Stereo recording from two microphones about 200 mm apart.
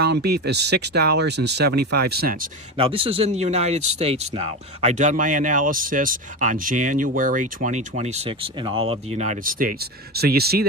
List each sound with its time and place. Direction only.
0.0 s speech: 55° right (ahead or behind)
2.7 s speech: 25° right (ahead or behind); by 10.7 s 50° right (ahead or behind)